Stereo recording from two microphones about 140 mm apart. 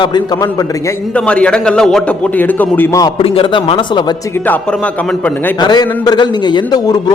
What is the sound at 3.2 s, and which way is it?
Speech, 40° left (ahead or behind).